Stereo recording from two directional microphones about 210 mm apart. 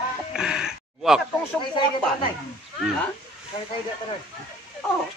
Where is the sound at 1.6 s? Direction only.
25° left (ahead or behind).